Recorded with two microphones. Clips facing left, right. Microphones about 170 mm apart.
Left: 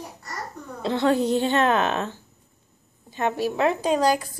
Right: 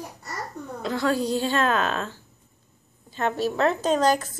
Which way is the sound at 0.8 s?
25° left (ahead or behind).